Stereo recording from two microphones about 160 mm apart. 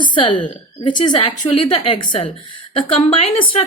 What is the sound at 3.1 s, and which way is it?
Speech, 35° left (ahead or behind).